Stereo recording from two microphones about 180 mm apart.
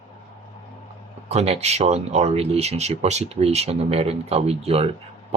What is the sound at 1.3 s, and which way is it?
Speech, 35° right (ahead or behind).